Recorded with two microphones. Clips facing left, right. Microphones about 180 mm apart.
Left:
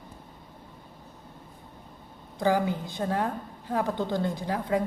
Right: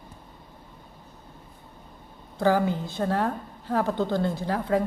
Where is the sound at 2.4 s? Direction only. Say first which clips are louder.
Right 2 dB; 15° left (ahead or behind).